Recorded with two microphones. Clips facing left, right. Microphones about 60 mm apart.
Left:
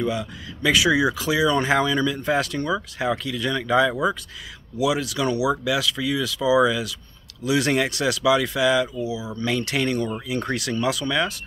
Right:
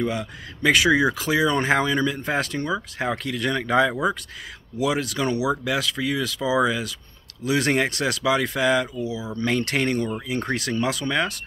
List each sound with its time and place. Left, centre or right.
0.0 s speech: right